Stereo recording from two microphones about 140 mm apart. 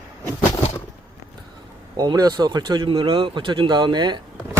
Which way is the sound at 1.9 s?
30° right (ahead or behind).